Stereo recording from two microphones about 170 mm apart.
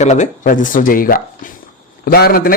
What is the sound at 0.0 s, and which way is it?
Speech, 45° left (ahead or behind).